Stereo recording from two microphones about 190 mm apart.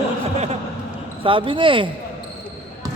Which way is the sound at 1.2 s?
25° right (ahead or behind).